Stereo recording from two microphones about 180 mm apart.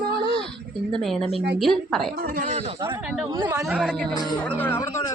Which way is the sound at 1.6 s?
Centre (ahead or behind).